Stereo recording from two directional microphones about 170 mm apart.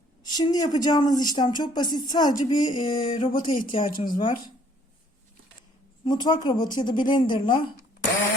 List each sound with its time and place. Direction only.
0.2 s speech: 25° left (ahead or behind)
6.1 s speech: 25° left (ahead or behind)